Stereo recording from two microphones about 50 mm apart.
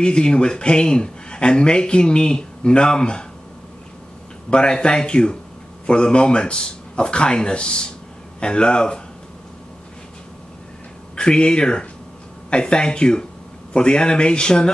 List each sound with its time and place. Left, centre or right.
0.0 s speech: centre
4.5 s speech: centre
11.1 s speech: centre